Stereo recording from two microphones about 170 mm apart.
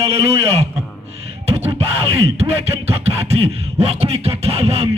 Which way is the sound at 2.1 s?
35° right (ahead or behind).